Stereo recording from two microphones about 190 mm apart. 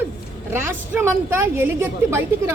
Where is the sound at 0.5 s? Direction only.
10° right (ahead or behind).